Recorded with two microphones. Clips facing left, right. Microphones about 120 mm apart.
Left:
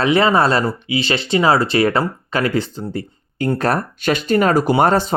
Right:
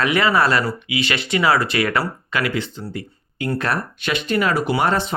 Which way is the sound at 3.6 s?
40° left (ahead or behind).